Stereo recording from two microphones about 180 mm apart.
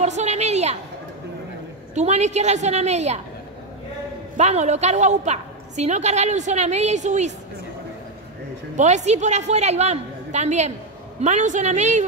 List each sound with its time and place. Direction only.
0.0 s a woman's voice: 40° right (ahead or behind)
2.0 s a woman's voice: 40° right (ahead or behind)
4.4 s a woman's voice: 40° right (ahead or behind)
8.7 s a woman's voice: 40° right (ahead or behind)